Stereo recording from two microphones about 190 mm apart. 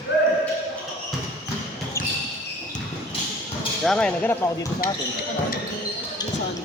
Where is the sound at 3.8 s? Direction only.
5° left (ahead or behind).